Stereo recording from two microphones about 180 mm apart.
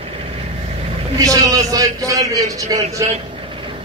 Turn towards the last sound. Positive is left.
turn(degrees=-20)  # may be behind; listen again after turning